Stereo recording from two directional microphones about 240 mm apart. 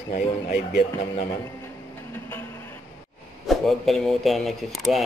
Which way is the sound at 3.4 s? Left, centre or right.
Centre.